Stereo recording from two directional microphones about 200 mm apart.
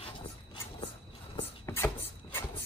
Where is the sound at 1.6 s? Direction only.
10° left (ahead or behind).